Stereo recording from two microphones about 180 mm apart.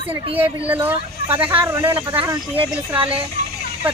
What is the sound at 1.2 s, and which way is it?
Speech, 30° right (ahead or behind).